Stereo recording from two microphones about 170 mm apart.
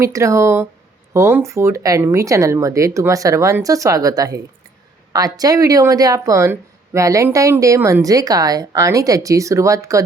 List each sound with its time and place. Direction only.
0.0 s speech: 15° right (ahead or behind)